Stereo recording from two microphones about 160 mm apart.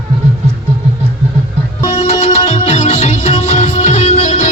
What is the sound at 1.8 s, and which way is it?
Music, 40° left (ahead or behind).